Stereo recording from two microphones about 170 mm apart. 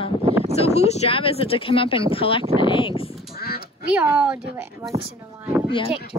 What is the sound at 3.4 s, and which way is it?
Quack, 65° left (ahead or behind).